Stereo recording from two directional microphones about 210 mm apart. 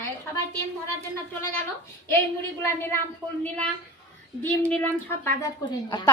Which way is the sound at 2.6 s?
10° left (ahead or behind).